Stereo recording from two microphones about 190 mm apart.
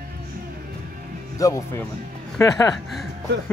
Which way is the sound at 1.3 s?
15° left (ahead or behind).